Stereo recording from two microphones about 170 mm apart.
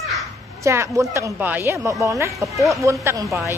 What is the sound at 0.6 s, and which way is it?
A woman's voice, 15° right (ahead or behind).